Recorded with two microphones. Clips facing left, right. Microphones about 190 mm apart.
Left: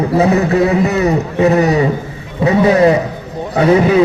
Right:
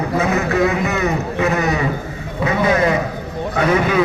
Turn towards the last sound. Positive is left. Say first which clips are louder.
# left 6 dB
turn(degrees=30)  # may be behind; listen again after turning